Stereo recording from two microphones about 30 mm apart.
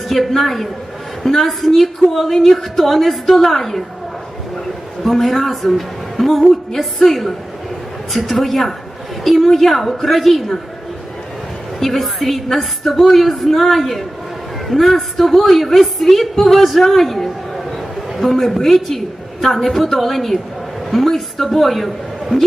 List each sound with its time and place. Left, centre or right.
0.1 s a woman's voice: centre
5.0 s a woman's voice: centre
11.8 s a woman's voice: centre